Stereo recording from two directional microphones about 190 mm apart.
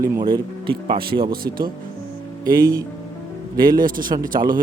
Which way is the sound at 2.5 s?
20° right (ahead or behind).